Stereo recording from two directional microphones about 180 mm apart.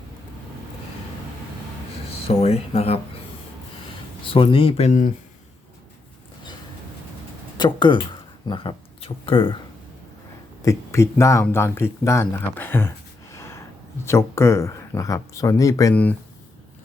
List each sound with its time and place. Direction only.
2.2 s speech: 35° left (ahead or behind)
4.2 s speech: 30° left (ahead or behind)
7.6 s speech: 25° left (ahead or behind)
10.6 s speech: 15° left (ahead or behind)
13.3 s a sound: 15° left (ahead or behind)
14.0 s speech: 15° left (ahead or behind)